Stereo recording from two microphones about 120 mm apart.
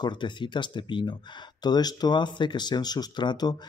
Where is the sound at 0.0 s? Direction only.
40° left (ahead or behind).